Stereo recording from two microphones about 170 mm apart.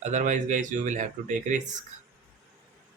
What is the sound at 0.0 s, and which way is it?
Speech, 45° right (ahead or behind).